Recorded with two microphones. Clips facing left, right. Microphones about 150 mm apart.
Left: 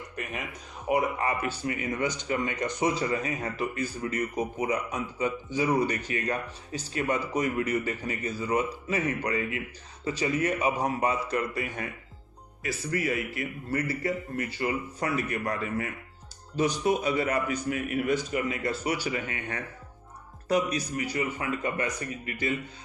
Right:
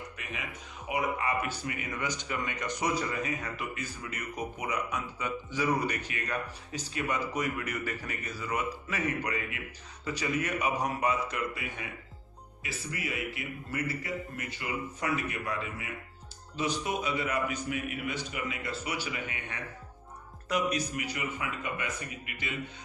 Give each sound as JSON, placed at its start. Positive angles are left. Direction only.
{"t": 0.2, "sound": "a man's voice", "side_deg": 45}
{"t": 20.5, "sound": "a man's voice", "side_deg": 35}